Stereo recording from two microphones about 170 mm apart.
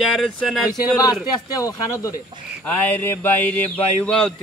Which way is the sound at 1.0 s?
20° left (ahead or behind).